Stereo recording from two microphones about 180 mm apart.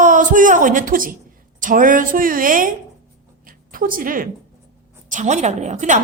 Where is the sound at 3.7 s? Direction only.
50° right (ahead or behind).